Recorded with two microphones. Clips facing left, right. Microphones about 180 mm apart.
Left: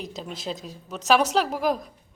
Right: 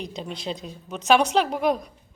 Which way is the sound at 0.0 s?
Centre (ahead or behind).